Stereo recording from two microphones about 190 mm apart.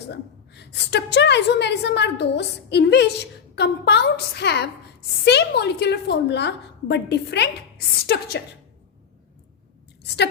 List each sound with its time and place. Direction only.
0.1 s a woman's voice: 65° left (ahead or behind)